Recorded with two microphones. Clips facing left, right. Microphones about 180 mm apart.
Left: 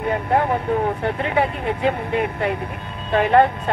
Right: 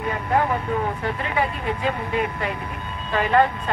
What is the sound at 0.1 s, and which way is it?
Speech, 55° left (ahead or behind).